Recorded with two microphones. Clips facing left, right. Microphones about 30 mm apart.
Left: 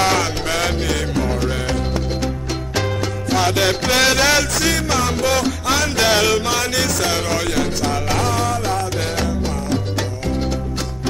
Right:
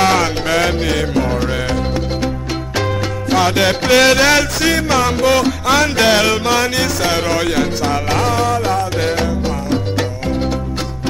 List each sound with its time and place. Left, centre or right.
0.0 s music: centre
3.3 s music: centre